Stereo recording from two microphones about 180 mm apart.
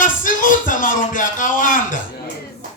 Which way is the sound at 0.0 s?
50° left (ahead or behind).